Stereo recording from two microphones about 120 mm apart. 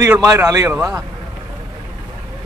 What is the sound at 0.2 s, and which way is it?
Speech, 25° right (ahead or behind).